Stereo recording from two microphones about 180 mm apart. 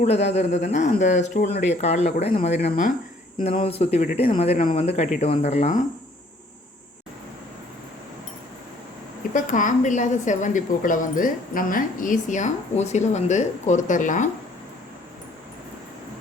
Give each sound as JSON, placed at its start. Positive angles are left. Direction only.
{"t": 0.0, "sound": "speech", "side_deg": 35}
{"t": 2.6, "sound": "a woman's voice", "side_deg": 45}
{"t": 3.3, "sound": "speech", "side_deg": 30}
{"t": 9.3, "sound": "a woman's voice", "side_deg": 45}